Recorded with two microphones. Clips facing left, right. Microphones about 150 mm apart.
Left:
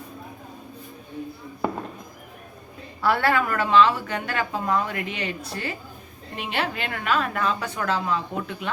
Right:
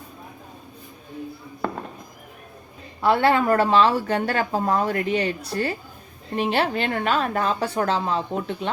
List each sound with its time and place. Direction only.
1.6 s fireworks: 15° left (ahead or behind)
3.0 s a woman's voice: 20° right (ahead or behind)